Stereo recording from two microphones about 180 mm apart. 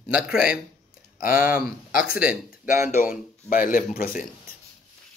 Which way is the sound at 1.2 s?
50° left (ahead or behind).